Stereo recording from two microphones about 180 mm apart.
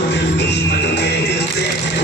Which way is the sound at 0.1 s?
75° left (ahead or behind).